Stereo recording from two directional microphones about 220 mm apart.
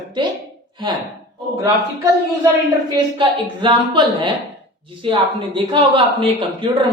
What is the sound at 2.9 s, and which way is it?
A woman's voice, 20° right (ahead or behind).